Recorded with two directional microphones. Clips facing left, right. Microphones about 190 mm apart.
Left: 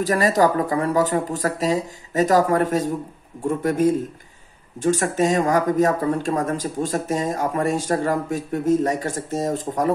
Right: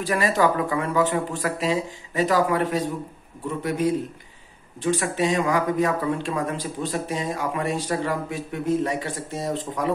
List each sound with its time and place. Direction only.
0.0 s speech: 40° left (ahead or behind)